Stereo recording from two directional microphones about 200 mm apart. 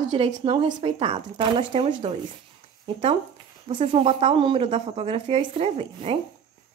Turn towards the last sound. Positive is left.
turn(degrees=-30)  # may be behind; listen again after turning